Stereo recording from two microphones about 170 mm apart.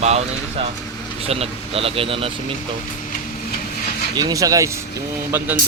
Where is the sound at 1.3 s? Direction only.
35° right (ahead or behind).